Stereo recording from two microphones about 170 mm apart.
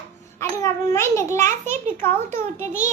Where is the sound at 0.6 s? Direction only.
15° left (ahead or behind).